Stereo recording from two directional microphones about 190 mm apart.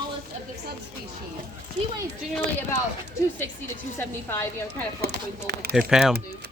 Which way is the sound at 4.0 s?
10° left (ahead or behind).